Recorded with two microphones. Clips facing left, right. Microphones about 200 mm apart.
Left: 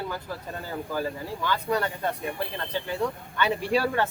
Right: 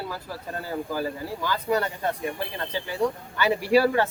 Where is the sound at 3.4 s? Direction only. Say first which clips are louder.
Right 4 dB; 5° right (ahead or behind).